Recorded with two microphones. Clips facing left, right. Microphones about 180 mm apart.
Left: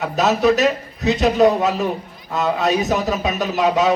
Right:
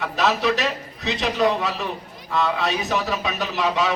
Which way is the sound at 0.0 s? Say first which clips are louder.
Left 5 dB; 45° left (ahead or behind).